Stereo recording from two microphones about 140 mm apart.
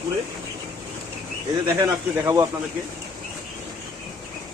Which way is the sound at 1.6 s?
25° right (ahead or behind).